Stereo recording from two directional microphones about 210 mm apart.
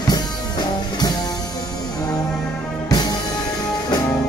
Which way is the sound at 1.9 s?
20° left (ahead or behind).